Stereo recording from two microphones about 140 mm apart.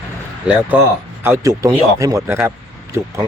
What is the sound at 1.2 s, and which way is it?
A man's voice, 20° right (ahead or behind).